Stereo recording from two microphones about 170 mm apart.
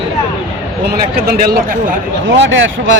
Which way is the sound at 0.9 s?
65° right (ahead or behind).